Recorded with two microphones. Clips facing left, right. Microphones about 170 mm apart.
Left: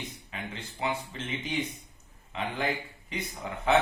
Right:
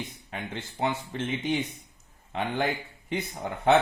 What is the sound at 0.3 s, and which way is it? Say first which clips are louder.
Speech: right 3 dB; 55° right (ahead or behind).